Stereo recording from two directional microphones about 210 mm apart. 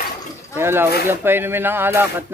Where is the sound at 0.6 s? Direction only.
10° right (ahead or behind).